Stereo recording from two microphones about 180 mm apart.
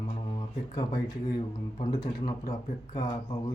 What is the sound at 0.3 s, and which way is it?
Speech, 25° left (ahead or behind).